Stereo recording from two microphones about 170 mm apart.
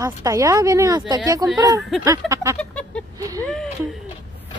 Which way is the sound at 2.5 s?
5° left (ahead or behind).